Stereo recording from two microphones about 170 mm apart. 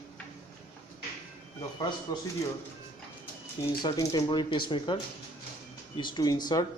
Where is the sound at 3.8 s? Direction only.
25° left (ahead or behind).